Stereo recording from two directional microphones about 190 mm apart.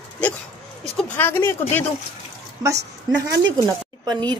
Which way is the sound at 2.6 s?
20° right (ahead or behind).